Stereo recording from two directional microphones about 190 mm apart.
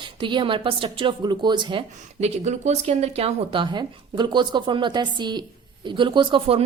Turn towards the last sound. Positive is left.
turn(degrees=-30)  # may be behind; listen again after turning